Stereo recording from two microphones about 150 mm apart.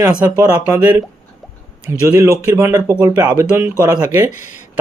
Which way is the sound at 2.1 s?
20° right (ahead or behind).